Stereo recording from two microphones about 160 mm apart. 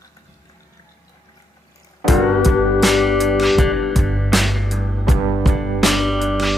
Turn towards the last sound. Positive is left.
turn(degrees=0)  # may be behind; listen again after turning